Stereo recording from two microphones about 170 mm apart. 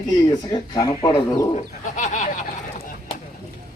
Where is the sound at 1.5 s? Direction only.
45° left (ahead or behind).